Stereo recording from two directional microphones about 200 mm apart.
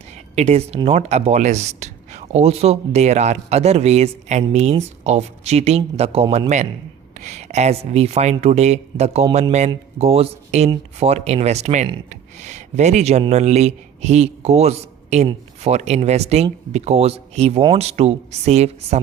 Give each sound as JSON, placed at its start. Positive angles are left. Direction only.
{"t": 0.3, "sound": "speech", "side_deg": -30}